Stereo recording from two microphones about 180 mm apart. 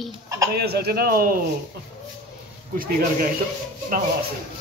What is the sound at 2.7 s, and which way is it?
Speech, 50° right (ahead or behind).